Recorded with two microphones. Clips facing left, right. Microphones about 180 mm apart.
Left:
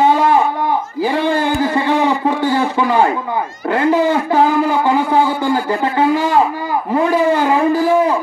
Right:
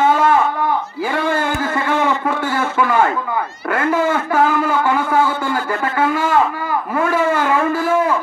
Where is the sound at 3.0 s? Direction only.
15° left (ahead or behind).